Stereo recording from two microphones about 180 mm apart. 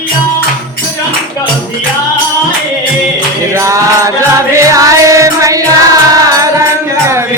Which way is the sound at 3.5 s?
15° right (ahead or behind).